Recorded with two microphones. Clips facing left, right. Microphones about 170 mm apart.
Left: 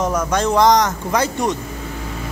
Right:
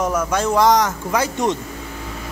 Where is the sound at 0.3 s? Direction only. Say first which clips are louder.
Left 2 dB; 5° right (ahead or behind).